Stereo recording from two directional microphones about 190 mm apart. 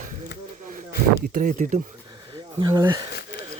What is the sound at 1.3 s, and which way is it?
Speech, 45° right (ahead or behind).